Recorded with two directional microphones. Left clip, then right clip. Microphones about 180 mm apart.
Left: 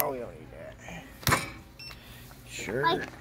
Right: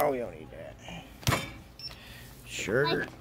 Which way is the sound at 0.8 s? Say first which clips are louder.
Left 3 dB; 15° right (ahead or behind).